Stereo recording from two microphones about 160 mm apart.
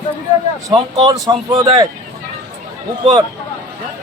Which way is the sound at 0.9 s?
25° right (ahead or behind).